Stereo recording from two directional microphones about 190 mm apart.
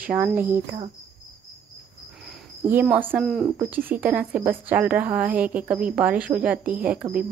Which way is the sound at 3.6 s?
10° right (ahead or behind).